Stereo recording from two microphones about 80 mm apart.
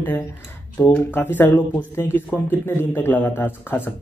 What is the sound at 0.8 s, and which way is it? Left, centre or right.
Speech, left.